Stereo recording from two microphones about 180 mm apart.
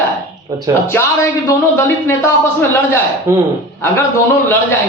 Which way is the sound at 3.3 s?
15° right (ahead or behind).